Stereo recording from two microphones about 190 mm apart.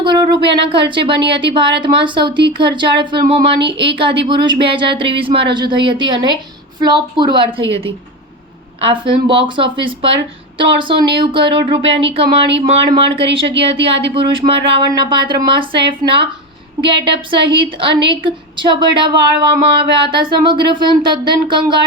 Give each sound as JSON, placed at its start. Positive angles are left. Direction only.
{"t": 0.0, "sound": "speech", "side_deg": -25}
{"t": 8.8, "sound": "speech", "side_deg": -30}